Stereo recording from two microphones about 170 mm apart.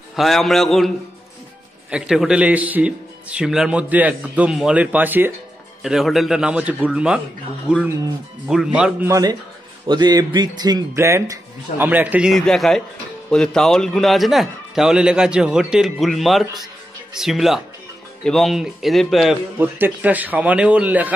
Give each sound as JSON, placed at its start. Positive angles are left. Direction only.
{"t": 0.1, "sound": "a man's voice", "side_deg": 0}
{"t": 9.1, "sound": "a man's voice", "side_deg": -20}
{"t": 19.6, "sound": "speech", "side_deg": -10}